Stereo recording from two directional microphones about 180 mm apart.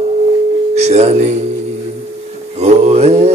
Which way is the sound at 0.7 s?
40° right (ahead or behind).